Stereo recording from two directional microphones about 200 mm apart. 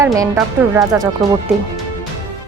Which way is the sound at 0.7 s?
Centre (ahead or behind).